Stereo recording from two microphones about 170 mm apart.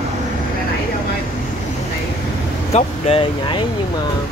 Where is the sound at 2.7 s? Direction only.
35° left (ahead or behind).